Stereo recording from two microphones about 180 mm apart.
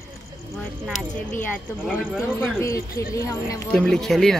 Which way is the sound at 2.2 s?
15° left (ahead or behind).